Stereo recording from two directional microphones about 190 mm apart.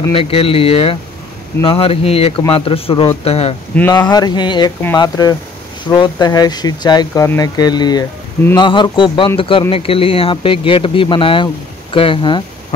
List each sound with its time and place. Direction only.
0.1 s speech: 30° left (ahead or behind)
3.9 s speech: 20° left (ahead or behind)